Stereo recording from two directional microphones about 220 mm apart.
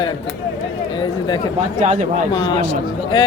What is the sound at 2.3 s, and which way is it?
Speech, 20° left (ahead or behind).